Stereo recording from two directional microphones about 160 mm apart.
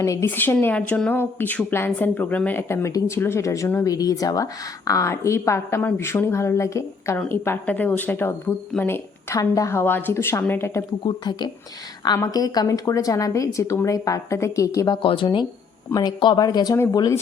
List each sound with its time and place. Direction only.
0.0 s speech: 20° left (ahead or behind)
11.0 s a woman's voice: 25° left (ahead or behind)
15.0 s a woman's voice: 30° left (ahead or behind)